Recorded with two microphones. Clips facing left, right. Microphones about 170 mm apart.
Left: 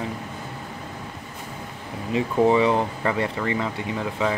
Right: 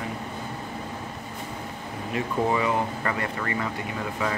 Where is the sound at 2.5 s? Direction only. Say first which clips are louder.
Left 5 dB; 25° left (ahead or behind).